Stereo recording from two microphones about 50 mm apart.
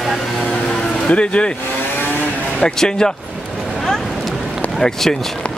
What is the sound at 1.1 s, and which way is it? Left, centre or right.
Speech, left.